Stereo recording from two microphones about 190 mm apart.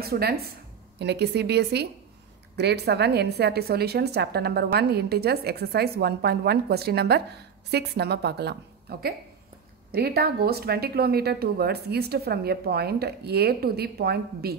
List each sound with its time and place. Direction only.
0.0 s a woman's voice: 55° right (ahead or behind)